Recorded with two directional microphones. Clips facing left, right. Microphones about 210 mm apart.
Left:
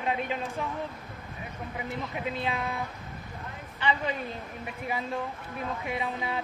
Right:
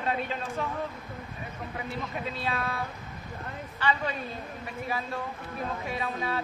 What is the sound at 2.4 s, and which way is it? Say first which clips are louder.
Speech: right 1 dB; 15° left (ahead or behind).